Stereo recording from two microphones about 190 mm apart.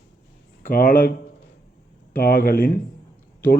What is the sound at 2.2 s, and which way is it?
Speech, 50° left (ahead or behind).